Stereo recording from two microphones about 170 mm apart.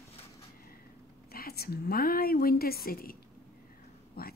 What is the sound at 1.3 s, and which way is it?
A woman's voice, 65° left (ahead or behind).